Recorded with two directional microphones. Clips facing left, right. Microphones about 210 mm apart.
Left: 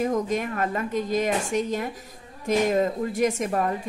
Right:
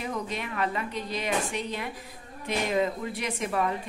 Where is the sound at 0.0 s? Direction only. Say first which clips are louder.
Left 8 dB; 45° left (ahead or behind).